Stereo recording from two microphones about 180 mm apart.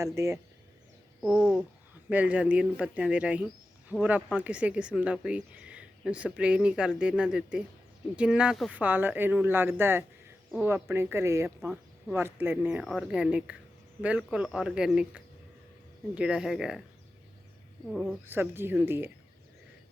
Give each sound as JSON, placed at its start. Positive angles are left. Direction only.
{"t": 0.0, "sound": "speech", "side_deg": -15}
{"t": 18.3, "sound": "speech", "side_deg": -10}